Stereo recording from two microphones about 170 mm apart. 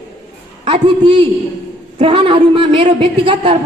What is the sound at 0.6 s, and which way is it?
A man's voice, 30° right (ahead or behind).